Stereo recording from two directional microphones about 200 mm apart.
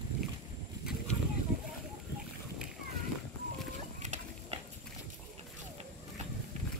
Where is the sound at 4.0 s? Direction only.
35° right (ahead or behind).